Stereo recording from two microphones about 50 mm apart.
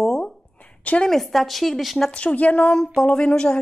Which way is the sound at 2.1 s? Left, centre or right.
Left.